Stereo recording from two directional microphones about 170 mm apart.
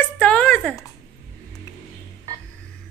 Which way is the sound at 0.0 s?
5° left (ahead or behind).